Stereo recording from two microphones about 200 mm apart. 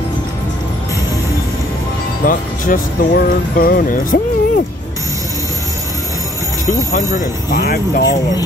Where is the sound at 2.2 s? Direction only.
45° left (ahead or behind).